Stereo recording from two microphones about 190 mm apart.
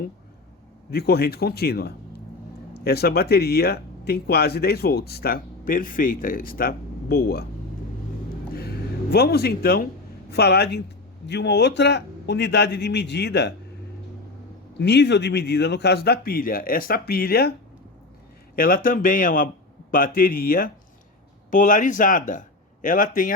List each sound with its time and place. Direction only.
0.9 s speech: 55° left (ahead or behind)
8.5 s a sound: 55° left (ahead or behind)
10.3 s speech: 60° left (ahead or behind)
14.8 s speech: 65° left (ahead or behind)
18.5 s speech: 50° left (ahead or behind)